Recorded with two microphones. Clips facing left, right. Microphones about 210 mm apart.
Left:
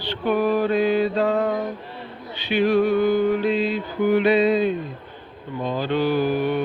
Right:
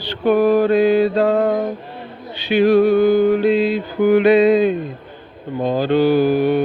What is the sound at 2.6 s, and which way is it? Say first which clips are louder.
Mantra: right 6 dB; 35° right (ahead or behind).